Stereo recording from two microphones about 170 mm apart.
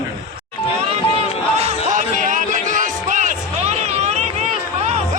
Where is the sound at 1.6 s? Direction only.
45° right (ahead or behind).